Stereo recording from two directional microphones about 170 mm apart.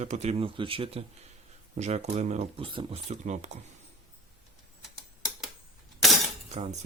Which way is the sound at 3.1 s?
45° right (ahead or behind).